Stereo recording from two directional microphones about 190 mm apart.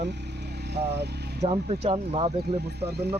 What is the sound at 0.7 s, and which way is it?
Speech, 60° right (ahead or behind).